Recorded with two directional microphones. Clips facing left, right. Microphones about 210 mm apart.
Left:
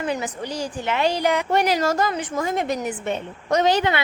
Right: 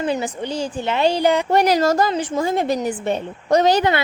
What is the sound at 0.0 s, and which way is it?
A woman's voice, 30° right (ahead or behind).